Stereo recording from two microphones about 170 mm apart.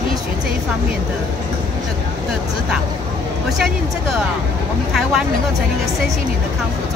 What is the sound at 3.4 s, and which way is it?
Speech, centre (ahead or behind).